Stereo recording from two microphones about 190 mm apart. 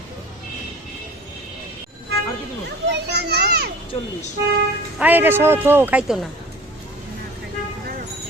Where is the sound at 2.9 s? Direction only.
60° right (ahead or behind).